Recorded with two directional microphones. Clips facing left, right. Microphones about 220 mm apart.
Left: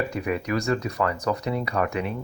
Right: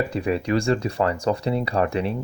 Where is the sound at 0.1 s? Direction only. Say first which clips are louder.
Right 4 dB; 30° right (ahead or behind).